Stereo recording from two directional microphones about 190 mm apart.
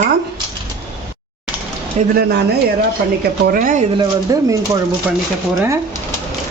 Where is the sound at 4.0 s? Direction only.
20° right (ahead or behind).